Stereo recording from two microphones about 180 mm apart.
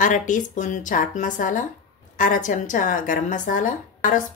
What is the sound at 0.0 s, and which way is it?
Speech, 45° left (ahead or behind).